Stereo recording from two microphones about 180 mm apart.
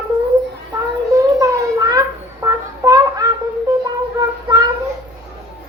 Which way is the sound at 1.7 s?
20° right (ahead or behind).